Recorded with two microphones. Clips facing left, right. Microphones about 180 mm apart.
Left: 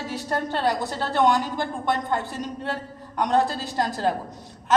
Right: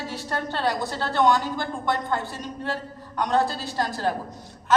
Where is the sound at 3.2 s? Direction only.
20° left (ahead or behind).